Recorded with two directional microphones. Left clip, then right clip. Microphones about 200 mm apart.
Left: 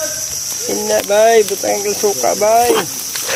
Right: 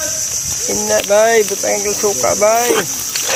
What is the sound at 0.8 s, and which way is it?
Speech, 55° left (ahead or behind).